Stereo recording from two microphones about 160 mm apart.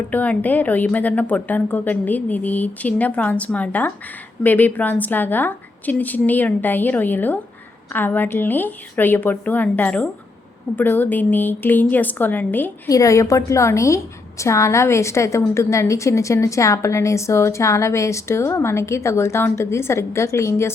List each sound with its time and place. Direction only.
0.1 s a woman's voice: 10° left (ahead or behind)